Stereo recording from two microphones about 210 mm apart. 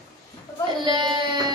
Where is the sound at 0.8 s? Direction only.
20° right (ahead or behind).